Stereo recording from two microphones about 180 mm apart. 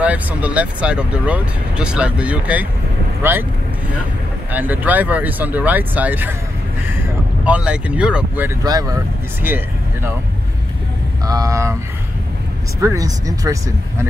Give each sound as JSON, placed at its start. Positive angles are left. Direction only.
{"t": 0.0, "sound": "speech", "side_deg": -10}
{"t": 4.5, "sound": "speech", "side_deg": -10}
{"t": 7.4, "sound": "speech", "side_deg": -5}
{"t": 8.6, "sound": "speech", "side_deg": -20}
{"t": 11.2, "sound": "speech", "side_deg": -20}
{"t": 12.8, "sound": "speech", "side_deg": -20}